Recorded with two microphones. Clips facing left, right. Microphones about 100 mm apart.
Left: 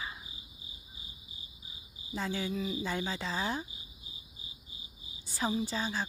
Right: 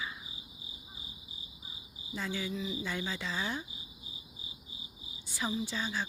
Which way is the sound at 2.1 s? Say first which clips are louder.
Left 2 dB; 40° left (ahead or behind).